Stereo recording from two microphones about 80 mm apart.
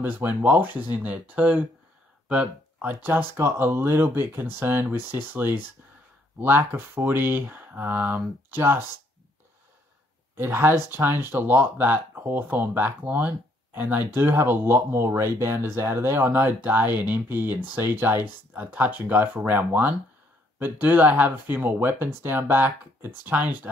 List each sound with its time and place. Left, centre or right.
0.0 s speech: right
3.3 s speech: right
10.3 s speech: right